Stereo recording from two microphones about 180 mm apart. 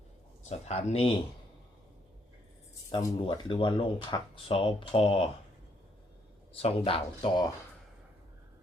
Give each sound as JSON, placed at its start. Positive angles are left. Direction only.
{"t": 0.4, "sound": "speech", "side_deg": 35}
{"t": 3.2, "sound": "speech", "side_deg": 25}
{"t": 6.6, "sound": "speech", "side_deg": 35}